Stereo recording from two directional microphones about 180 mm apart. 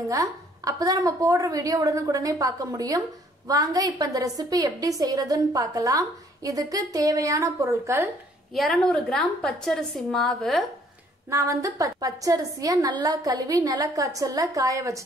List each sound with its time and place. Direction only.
0.0 s a woman's voice: 20° right (ahead or behind)
8.5 s a woman's voice: 5° left (ahead or behind)
11.2 s a woman's voice: 15° right (ahead or behind)